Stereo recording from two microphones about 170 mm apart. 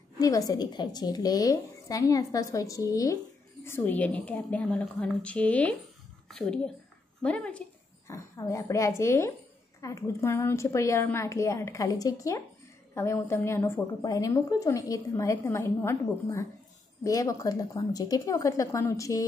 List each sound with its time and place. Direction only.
0.2 s a woman's voice: 20° left (ahead or behind)
8.1 s a woman's voice: 20° left (ahead or behind)